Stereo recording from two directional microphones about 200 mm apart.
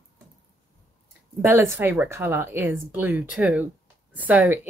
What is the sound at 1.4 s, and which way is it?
Speech, 15° right (ahead or behind).